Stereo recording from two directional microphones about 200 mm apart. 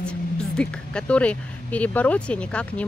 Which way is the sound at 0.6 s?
5° left (ahead or behind).